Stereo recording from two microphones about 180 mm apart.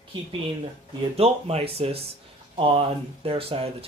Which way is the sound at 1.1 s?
35° right (ahead or behind).